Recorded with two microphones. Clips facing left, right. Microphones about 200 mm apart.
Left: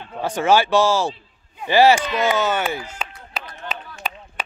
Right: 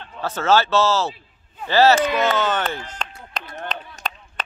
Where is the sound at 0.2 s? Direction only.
15° left (ahead or behind).